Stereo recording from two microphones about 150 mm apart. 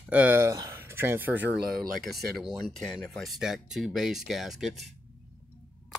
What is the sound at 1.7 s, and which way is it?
Speech, 75° right (ahead or behind).